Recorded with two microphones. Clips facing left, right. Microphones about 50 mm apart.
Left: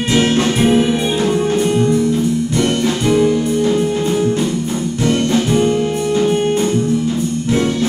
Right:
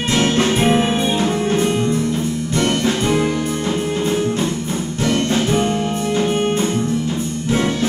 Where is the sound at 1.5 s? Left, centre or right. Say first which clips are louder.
Left 3 dB; right.